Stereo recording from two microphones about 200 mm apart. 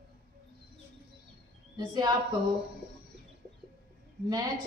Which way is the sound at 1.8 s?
20° right (ahead or behind).